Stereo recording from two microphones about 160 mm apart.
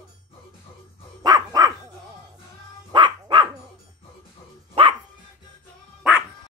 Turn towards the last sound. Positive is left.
turn(degrees=-5)  # may be behind; listen again after turning